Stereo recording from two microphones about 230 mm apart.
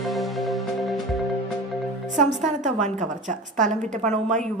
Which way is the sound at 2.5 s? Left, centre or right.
Right.